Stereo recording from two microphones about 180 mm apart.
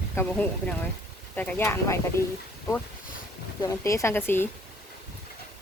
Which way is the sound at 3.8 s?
15° left (ahead or behind).